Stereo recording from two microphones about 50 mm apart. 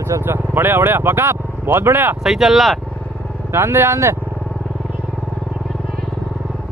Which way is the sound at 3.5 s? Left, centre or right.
Right.